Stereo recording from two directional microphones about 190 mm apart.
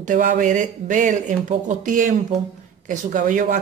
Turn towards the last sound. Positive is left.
turn(degrees=-45)  # may be behind; listen again after turning